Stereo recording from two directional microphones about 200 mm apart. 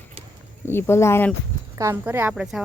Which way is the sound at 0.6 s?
10° left (ahead or behind).